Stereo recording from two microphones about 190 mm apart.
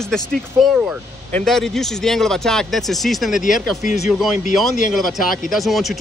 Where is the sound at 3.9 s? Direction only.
40° left (ahead or behind).